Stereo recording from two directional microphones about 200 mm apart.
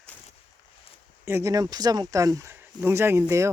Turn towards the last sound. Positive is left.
turn(degrees=-10)  # may be behind; listen again after turning